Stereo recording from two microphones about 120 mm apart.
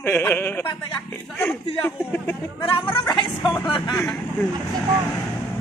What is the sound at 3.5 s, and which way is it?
Speech, 40° left (ahead or behind).